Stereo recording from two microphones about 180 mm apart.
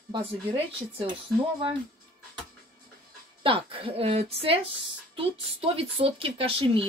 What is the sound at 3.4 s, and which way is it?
Speech, 30° right (ahead or behind).